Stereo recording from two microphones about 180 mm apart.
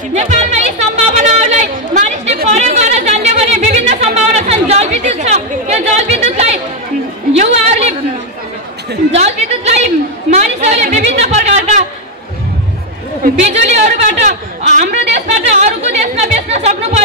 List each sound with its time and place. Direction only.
0.1 s music: 40° right (ahead or behind)
2.4 s a sound: 40° right (ahead or behind)
7.3 s chatter: 35° right (ahead or behind)
9.1 s a woman's voice: 35° right (ahead or behind)
10.3 s a sound: 40° right (ahead or behind)
13.2 s a man's voice: 40° right (ahead or behind)